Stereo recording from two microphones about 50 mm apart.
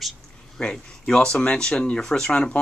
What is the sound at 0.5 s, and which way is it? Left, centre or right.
Speech, centre.